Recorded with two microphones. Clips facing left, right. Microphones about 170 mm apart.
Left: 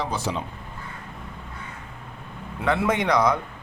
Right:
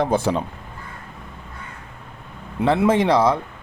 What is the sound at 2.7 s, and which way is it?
Speech, 30° right (ahead or behind).